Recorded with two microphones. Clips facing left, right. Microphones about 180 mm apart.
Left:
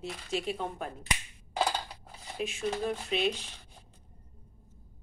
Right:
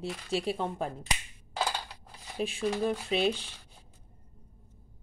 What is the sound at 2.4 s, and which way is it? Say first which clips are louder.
Speech: right 3 dB; 40° right (ahead or behind).